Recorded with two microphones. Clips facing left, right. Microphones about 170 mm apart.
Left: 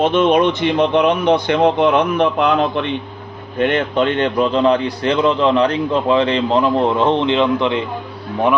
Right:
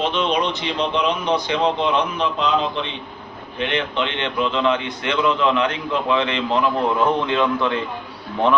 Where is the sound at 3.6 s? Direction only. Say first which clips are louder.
Left 7 dB; 45° left (ahead or behind).